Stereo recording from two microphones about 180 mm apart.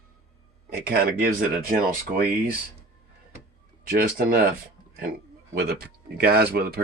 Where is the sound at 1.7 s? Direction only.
50° right (ahead or behind).